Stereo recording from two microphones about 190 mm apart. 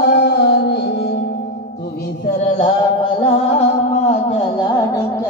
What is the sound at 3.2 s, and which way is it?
Music, 30° left (ahead or behind).